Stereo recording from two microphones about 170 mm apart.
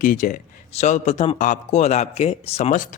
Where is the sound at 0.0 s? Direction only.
50° left (ahead or behind).